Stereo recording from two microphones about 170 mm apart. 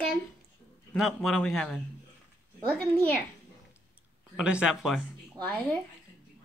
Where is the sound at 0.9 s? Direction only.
Centre (ahead or behind).